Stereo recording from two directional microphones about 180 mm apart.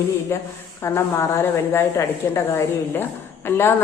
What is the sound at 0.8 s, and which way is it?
Speech, 15° left (ahead or behind).